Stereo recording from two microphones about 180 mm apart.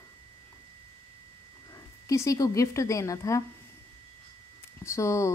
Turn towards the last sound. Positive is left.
turn(degrees=15)  # may be behind; listen again after turning